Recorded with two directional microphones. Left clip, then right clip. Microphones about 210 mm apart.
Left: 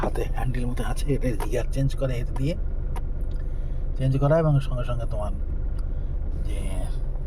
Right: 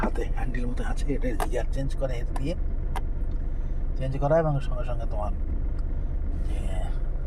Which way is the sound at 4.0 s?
35° left (ahead or behind).